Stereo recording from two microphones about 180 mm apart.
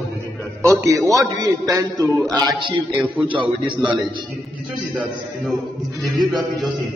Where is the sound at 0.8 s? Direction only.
20° right (ahead or behind).